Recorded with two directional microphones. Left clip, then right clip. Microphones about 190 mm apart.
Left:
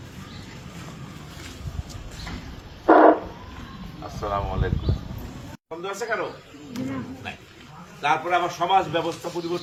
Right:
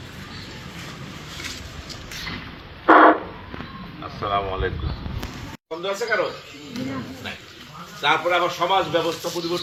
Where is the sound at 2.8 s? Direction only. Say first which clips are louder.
Right 2 dB; 35° left (ahead or behind).